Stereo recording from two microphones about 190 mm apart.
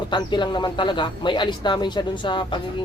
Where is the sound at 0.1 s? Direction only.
25° left (ahead or behind).